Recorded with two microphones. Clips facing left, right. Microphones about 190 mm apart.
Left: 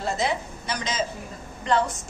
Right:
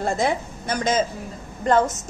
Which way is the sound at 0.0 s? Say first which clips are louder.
Right 4 dB; 50° right (ahead or behind).